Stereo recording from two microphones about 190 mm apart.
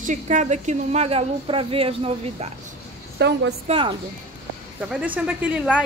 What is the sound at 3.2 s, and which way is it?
Speech, 60° right (ahead or behind).